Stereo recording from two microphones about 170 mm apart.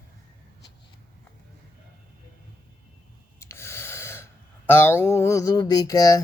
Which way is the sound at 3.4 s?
15° left (ahead or behind).